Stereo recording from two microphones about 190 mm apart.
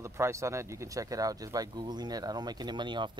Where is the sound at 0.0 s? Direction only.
15° right (ahead or behind).